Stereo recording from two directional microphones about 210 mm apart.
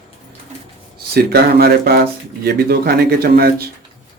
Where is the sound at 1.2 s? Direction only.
50° right (ahead or behind).